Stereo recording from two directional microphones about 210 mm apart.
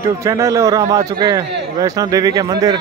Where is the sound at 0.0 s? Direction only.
15° right (ahead or behind).